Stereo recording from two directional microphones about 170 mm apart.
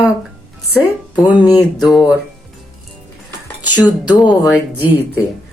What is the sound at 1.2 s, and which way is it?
Speech, 10° right (ahead or behind).